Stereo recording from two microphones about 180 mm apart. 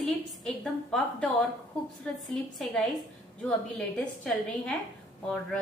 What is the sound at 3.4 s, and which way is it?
A woman's voice, 5° left (ahead or behind).